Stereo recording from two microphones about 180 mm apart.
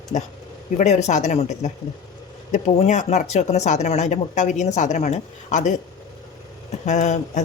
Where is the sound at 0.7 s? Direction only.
40° left (ahead or behind).